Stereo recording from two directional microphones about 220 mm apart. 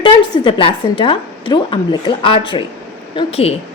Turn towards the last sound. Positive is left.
turn(degrees=25)  # may be behind; listen again after turning